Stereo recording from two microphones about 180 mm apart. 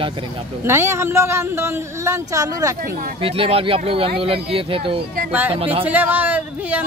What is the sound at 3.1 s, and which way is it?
Speech, 30° right (ahead or behind).